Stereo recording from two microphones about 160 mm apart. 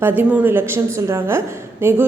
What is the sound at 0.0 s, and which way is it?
Speech, 10° right (ahead or behind).